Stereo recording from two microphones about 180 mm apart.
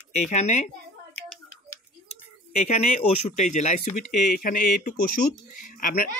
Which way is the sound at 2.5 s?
40° left (ahead or behind).